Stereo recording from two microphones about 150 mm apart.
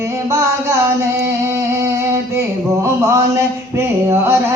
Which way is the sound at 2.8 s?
20° right (ahead or behind).